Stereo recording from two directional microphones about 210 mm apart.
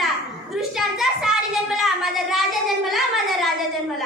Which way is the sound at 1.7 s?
Centre (ahead or behind).